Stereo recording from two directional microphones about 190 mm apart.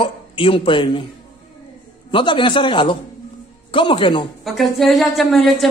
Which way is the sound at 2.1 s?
25° left (ahead or behind).